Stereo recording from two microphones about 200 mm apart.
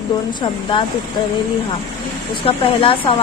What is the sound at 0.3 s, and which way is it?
Speech, 25° left (ahead or behind).